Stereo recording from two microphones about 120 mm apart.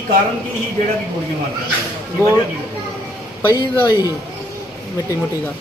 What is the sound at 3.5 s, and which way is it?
Speech, 35° left (ahead or behind).